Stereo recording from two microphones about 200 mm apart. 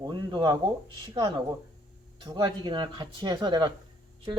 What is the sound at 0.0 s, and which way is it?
Speech, 20° right (ahead or behind).